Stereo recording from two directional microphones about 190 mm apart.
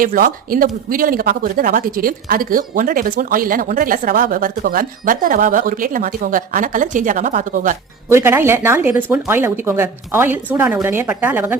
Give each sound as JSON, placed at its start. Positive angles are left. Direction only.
{"t": 0.0, "sound": "speech", "side_deg": -50}
{"t": 8.1, "sound": "speech", "side_deg": -10}